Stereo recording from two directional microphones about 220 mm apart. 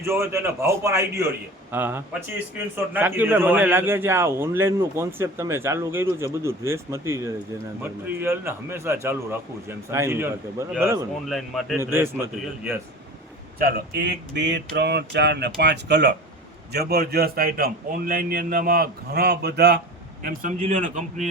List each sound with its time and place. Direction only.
0.0 s a man's voice: 10° right (ahead or behind)
11.3 s speech: centre (ahead or behind)
11.8 s a man's voice: 10° right (ahead or behind)
13.6 s a man's voice: 45° right (ahead or behind)
20.2 s a man's voice: 35° right (ahead or behind)